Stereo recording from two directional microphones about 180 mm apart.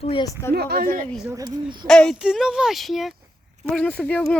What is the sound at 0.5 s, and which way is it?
Speech, 60° right (ahead or behind).